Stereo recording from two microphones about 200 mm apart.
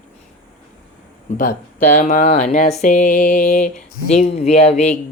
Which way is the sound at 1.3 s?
35° left (ahead or behind).